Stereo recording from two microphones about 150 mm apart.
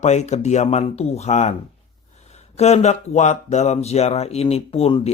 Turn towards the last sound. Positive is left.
turn(degrees=40)  # may be behind; listen again after turning